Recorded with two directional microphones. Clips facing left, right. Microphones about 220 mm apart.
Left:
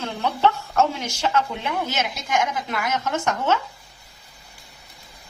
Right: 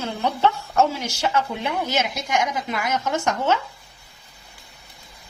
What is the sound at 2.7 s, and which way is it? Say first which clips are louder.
Speech: right 1 dB; 10° right (ahead or behind).